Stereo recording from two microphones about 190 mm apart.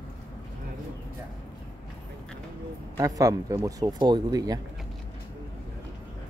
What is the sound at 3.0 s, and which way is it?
Speech, 15° right (ahead or behind).